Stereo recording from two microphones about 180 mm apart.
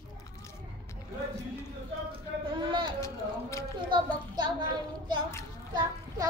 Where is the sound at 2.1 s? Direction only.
25° right (ahead or behind).